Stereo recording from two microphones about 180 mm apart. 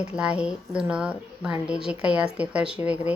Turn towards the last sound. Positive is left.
turn(degrees=-5)  # may be behind; listen again after turning